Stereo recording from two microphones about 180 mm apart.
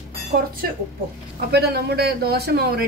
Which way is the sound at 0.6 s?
55° right (ahead or behind).